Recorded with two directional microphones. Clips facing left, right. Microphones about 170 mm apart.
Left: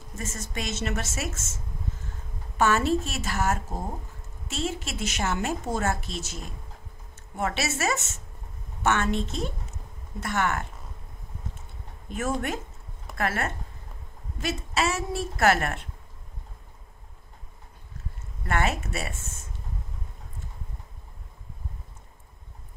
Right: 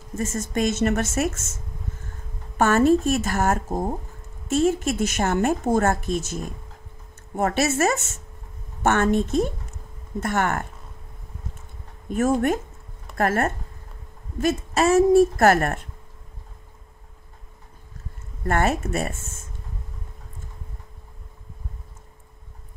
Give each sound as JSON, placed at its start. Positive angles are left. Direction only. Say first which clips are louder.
{"t": 0.2, "sound": "a woman's voice", "louder": "right 11 dB", "side_deg": -45}
{"t": 2.5, "sound": "a woman's voice", "louder": "right 6 dB", "side_deg": -50}
{"t": 12.1, "sound": "a woman's voice", "louder": "right 8 dB", "side_deg": -45}
{"t": 18.4, "sound": "a woman's voice", "louder": "right 5 dB", "side_deg": -45}